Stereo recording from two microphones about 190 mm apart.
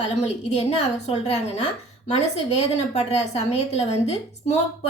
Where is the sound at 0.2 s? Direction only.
35° left (ahead or behind).